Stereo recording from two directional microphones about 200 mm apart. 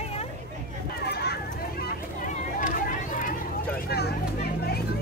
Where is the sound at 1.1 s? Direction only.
55° left (ahead or behind).